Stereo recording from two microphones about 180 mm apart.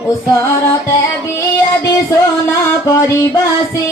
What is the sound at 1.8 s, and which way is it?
Music, 15° left (ahead or behind).